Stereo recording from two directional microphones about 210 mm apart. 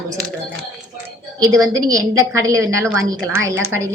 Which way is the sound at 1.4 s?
15° right (ahead or behind).